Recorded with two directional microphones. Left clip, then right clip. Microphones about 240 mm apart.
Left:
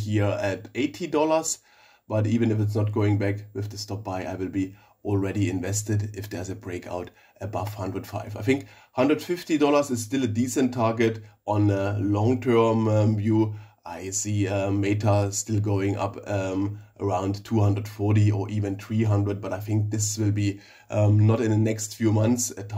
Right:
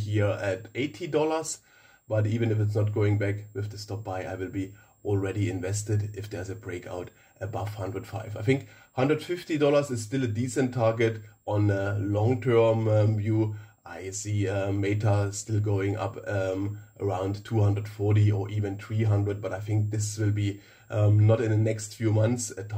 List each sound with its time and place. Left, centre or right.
0.0 s speech: left